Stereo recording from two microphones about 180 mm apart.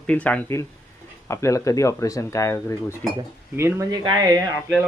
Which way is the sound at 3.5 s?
15° right (ahead or behind).